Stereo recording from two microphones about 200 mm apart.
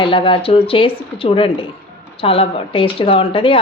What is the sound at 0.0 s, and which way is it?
A woman's voice, 25° left (ahead or behind).